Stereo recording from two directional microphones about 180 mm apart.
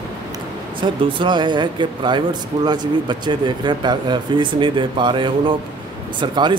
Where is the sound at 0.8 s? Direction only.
25° right (ahead or behind).